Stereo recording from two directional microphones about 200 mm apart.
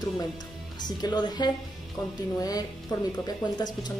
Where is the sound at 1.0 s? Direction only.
20° left (ahead or behind).